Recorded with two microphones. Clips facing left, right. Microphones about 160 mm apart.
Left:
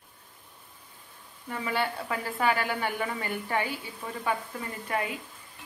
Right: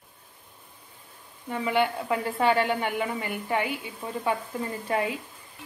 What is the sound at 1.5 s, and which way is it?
Speech, 15° right (ahead or behind).